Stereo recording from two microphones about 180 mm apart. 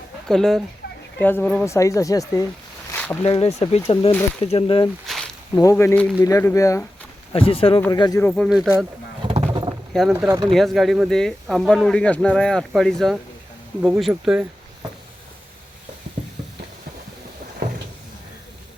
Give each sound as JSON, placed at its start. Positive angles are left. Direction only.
{"t": 0.3, "sound": "speech", "side_deg": 5}
{"t": 2.9, "sound": "a sound", "side_deg": 10}
{"t": 3.2, "sound": "speech", "side_deg": 30}
{"t": 5.1, "sound": "a sound", "side_deg": 0}
{"t": 5.7, "sound": "speech", "side_deg": 10}
{"t": 7.3, "sound": "speech", "side_deg": 30}
{"t": 8.2, "sound": "speech", "side_deg": 5}
{"t": 9.2, "sound": "a sound", "side_deg": -30}
{"t": 10.1, "sound": "speech", "side_deg": -10}
{"t": 10.5, "sound": "speech", "side_deg": 0}
{"t": 13.8, "sound": "speech", "side_deg": -10}
{"t": 17.6, "sound": "cupboard open or close", "side_deg": -50}